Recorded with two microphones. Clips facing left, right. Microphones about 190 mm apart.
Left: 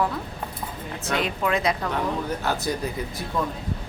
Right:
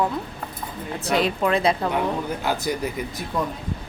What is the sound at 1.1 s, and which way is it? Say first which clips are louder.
Speech: right 4 dB; 35° right (ahead or behind).